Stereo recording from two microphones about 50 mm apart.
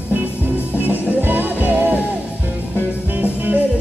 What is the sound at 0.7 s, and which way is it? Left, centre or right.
Music, right.